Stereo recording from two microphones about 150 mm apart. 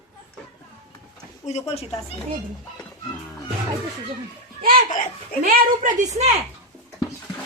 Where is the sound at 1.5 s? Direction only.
45° left (ahead or behind).